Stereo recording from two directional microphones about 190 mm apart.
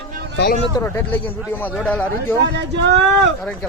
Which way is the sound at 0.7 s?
15° left (ahead or behind).